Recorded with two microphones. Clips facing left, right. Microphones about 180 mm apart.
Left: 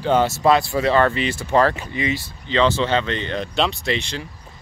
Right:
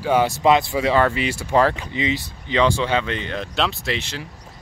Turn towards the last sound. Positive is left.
turn(degrees=-5)  # may be behind; listen again after turning